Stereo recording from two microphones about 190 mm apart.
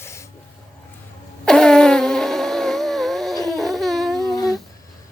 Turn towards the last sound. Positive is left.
turn(degrees=20)  # may be behind; listen again after turning